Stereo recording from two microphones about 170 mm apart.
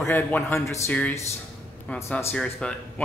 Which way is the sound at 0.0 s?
10° left (ahead or behind).